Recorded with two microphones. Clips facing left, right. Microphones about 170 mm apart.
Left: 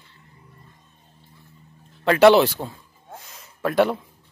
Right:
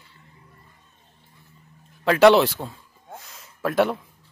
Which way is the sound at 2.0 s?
Centre (ahead or behind).